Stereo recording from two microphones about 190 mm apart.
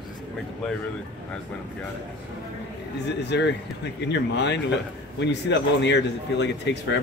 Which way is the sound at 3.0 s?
65° left (ahead or behind).